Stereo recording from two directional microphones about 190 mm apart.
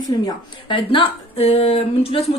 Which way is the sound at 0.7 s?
25° left (ahead or behind).